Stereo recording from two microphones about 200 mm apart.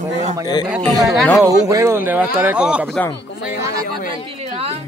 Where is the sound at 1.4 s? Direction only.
15° right (ahead or behind); by 3.1 s 5° left (ahead or behind).